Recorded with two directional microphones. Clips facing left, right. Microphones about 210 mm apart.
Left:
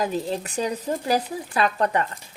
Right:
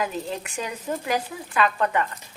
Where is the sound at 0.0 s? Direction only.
35° left (ahead or behind).